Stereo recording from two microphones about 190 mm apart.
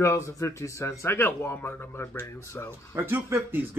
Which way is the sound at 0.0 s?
15° left (ahead or behind).